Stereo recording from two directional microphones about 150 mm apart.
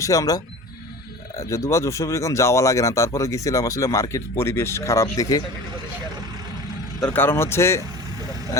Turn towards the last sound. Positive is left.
turn(degrees=15)  # may be behind; listen again after turning